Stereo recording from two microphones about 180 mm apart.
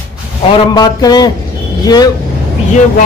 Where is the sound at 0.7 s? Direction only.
20° left (ahead or behind).